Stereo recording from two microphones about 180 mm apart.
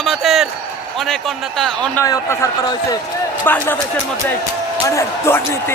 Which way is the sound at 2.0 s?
15° left (ahead or behind).